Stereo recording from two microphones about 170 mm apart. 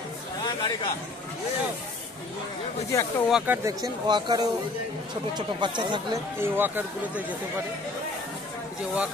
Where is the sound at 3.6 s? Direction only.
20° right (ahead or behind).